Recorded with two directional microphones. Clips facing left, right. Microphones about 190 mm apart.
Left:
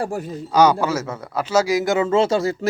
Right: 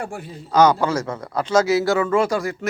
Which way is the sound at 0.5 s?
10° left (ahead or behind).